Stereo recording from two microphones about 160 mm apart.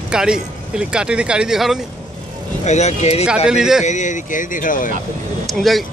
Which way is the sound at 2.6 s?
45° left (ahead or behind).